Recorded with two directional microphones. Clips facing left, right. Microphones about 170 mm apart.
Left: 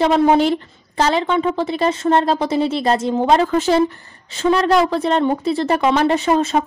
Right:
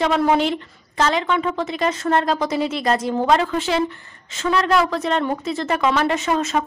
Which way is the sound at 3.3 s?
40° left (ahead or behind).